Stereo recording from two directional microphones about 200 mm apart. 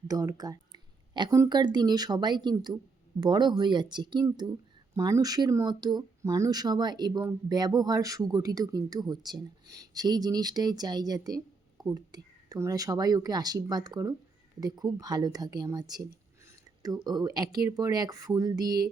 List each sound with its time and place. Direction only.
0.1 s speech: 20° right (ahead or behind)